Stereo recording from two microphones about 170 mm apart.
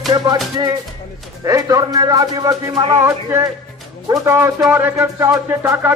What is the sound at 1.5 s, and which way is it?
Speech, 20° right (ahead or behind).